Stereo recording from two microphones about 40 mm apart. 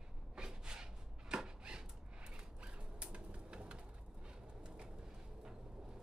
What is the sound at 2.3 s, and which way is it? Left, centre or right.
Bird, right.